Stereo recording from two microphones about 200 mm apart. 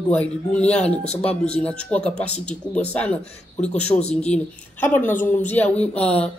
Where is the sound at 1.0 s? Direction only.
30° left (ahead or behind).